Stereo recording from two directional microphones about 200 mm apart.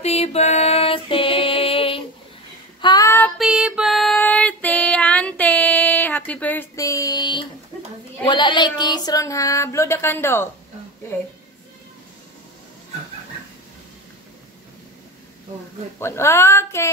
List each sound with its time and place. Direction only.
0.0 s music: 30° left (ahead or behind)
2.8 s child singing: 20° left (ahead or behind)
3.3 s music: centre (ahead or behind); by 7.4 s 20° left (ahead or behind)
8.3 s child singing: 25° left (ahead or behind)
16.0 s child singing: 10° left (ahead or behind)